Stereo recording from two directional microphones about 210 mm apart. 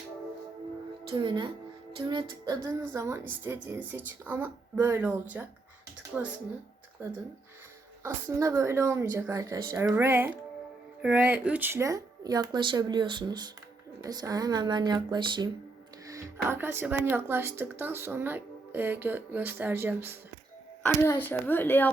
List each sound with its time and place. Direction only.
1.1 s speech: 20° right (ahead or behind)
20.8 s speech: 10° left (ahead or behind)